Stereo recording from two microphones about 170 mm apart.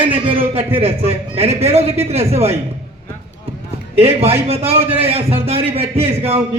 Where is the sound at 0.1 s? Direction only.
35° right (ahead or behind).